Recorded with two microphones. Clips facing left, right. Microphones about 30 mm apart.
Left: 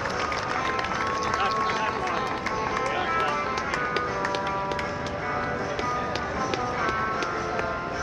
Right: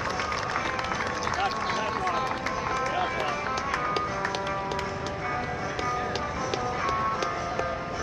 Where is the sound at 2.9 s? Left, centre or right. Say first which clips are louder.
Left 3 dB; centre.